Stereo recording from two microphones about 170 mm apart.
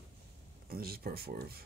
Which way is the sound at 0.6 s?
60° right (ahead or behind).